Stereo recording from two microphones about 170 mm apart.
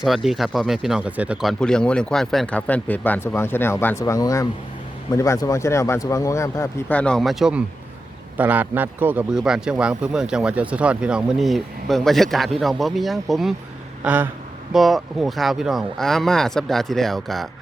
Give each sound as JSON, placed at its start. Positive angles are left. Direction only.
{"t": 0.0, "sound": "speech", "side_deg": 0}
{"t": 14.0, "sound": "a sound", "side_deg": -10}
{"t": 14.7, "sound": "speech", "side_deg": 0}